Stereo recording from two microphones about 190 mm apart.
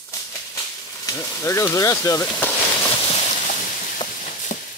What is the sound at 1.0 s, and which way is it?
Speech, 10° left (ahead or behind).